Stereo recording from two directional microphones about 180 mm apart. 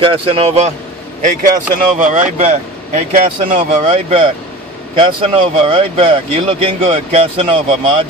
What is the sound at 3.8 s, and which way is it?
Speech, 30° right (ahead or behind).